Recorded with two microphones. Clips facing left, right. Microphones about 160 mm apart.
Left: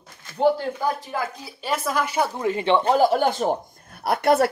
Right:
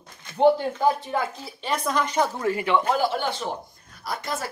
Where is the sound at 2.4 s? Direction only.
25° left (ahead or behind).